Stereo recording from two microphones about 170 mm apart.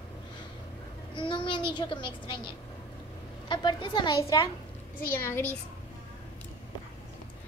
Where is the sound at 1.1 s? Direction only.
30° left (ahead or behind).